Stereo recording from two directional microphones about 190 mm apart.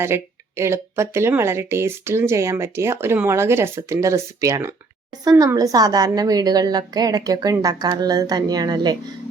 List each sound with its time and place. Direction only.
0.0 s a woman's voice: 15° right (ahead or behind)